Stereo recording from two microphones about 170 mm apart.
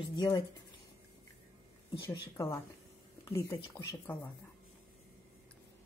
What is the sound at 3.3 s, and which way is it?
Speech, 15° left (ahead or behind).